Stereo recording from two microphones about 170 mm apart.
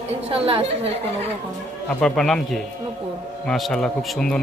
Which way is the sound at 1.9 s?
5° left (ahead or behind).